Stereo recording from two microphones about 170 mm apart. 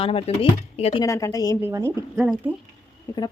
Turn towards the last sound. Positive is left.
turn(degrees=15)  # may be behind; listen again after turning